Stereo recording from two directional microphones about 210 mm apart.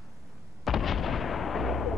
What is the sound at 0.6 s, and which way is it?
Artillery fire, centre (ahead or behind).